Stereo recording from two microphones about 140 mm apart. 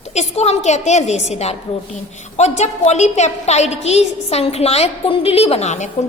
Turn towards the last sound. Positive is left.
turn(degrees=55)  # may be behind; listen again after turning